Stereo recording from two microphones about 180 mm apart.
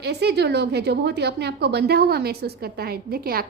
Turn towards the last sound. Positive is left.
turn(degrees=-55)  # may be behind; listen again after turning